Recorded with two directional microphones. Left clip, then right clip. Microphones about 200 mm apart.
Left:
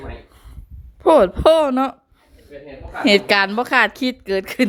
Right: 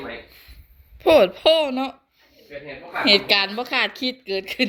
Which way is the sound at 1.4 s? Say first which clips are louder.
Left 4 dB; 40° left (ahead or behind).